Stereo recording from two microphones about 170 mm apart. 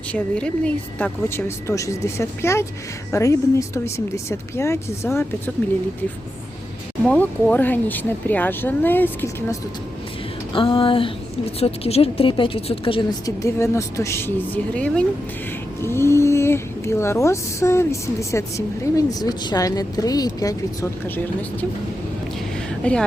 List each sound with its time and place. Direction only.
0.1 s speech: 5° left (ahead or behind)
7.0 s speech: 5° left (ahead or behind)
10.5 s a sound: 30° left (ahead or behind)
11.6 s a woman's voice: 35° left (ahead or behind); by 20.9 s 20° left (ahead or behind)
22.8 s speech: 5° left (ahead or behind)